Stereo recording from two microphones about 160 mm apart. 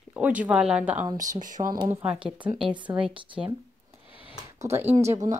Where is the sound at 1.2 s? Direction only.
55° right (ahead or behind).